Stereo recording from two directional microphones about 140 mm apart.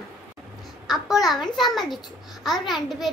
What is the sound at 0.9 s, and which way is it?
A child's voice, centre (ahead or behind).